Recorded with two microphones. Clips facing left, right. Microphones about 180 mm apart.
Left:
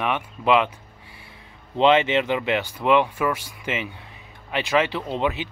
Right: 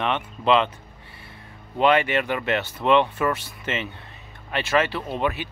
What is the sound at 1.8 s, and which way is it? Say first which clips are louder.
Speech: left 2 dB; 20° left (ahead or behind).